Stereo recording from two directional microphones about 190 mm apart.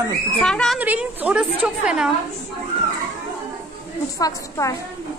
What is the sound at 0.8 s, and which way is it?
A woman's voice, 10° right (ahead or behind).